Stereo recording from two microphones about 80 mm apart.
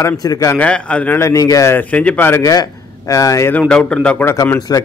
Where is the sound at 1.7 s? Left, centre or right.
Centre.